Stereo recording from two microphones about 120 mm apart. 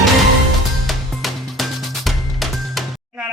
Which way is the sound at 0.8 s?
Centre (ahead or behind).